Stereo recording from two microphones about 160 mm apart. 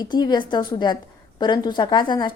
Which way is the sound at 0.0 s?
25° left (ahead or behind).